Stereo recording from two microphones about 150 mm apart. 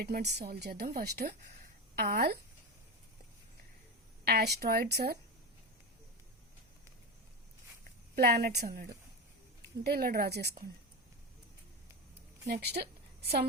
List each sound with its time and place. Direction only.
0.0 s a woman's voice: 90° right
4.3 s speech: 90° right
8.1 s a woman's voice: 90° right
12.5 s speech: 90° right